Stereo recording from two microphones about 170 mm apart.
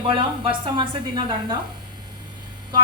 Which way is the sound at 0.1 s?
30° right (ahead or behind).